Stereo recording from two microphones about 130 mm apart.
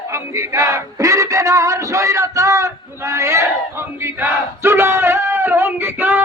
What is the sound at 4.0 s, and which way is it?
Battle cry, 20° right (ahead or behind).